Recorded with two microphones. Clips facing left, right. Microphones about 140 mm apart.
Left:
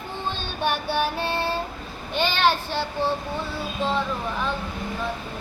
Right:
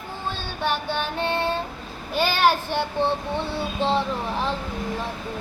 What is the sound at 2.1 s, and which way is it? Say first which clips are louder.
Child singing: right 2 dB; 10° right (ahead or behind).